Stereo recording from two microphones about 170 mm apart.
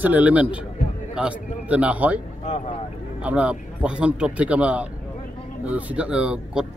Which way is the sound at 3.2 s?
10° right (ahead or behind).